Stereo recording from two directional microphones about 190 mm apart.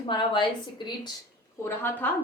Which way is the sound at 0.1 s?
25° left (ahead or behind).